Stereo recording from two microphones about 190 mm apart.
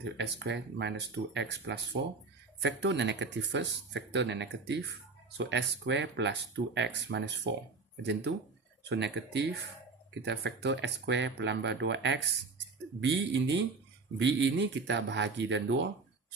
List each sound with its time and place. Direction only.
0.0 s speech: 65° right (ahead or behind)